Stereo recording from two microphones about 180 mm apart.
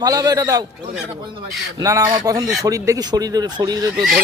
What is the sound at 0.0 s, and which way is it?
Speech, 20° right (ahead or behind).